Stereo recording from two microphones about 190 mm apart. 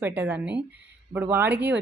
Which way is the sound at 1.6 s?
60° right (ahead or behind).